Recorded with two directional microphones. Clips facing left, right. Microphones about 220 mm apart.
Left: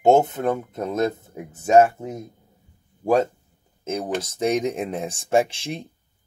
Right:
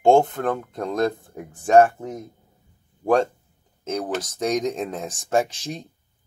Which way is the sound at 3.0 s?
5° left (ahead or behind).